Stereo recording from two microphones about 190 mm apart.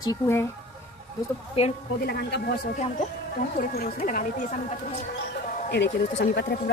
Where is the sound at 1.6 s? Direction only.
30° left (ahead or behind).